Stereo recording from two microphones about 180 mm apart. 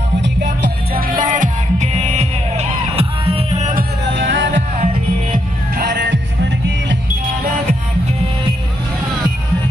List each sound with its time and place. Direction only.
0.2 s music: 70° right (ahead or behind)
1.2 s music: 45° right (ahead or behind)
4.1 s heart sounds: 85° right
4.5 s music: 45° right (ahead or behind)
5.3 s music: 60° right (ahead or behind)